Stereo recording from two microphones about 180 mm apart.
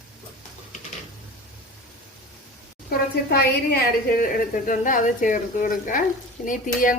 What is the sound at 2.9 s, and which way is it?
A woman's voice, 55° left (ahead or behind).